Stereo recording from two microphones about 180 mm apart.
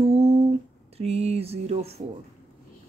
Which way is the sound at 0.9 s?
35° right (ahead or behind).